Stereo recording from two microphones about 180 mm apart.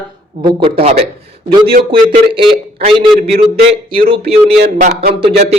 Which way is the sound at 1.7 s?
55° right (ahead or behind).